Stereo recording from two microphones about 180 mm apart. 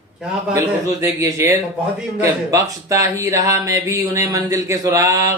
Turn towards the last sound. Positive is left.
turn(degrees=-20)  # may be behind; listen again after turning